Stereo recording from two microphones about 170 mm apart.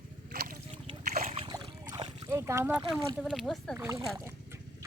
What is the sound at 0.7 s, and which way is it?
Splash, 30° right (ahead or behind).